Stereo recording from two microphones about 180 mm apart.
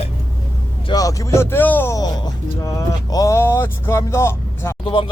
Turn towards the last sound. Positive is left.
turn(degrees=25)  # may be behind; listen again after turning